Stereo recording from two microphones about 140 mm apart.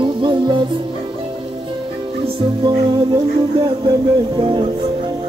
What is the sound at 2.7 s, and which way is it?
Music, 30° right (ahead or behind).